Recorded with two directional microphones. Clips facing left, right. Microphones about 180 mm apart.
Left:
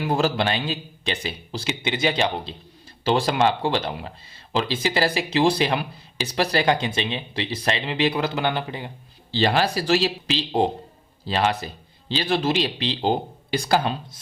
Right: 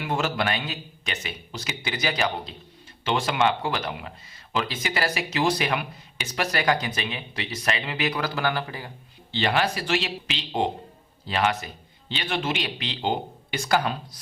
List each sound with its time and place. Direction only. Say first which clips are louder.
0.0 s a man's voice: left 4 dB; 35° left (ahead or behind)
9.3 s a man's voice: left 3 dB; 35° left (ahead or behind)